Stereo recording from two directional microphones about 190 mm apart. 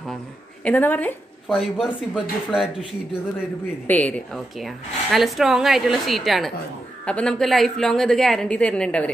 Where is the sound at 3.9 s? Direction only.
10° left (ahead or behind).